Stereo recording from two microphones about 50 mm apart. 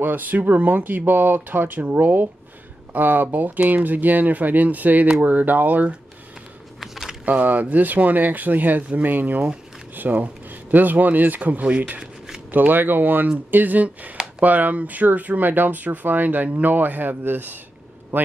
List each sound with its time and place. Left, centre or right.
0.0 s speech: right
6.8 s a sound: centre
7.2 s speech: right
11.6 s speech: right
12.4 s speech: right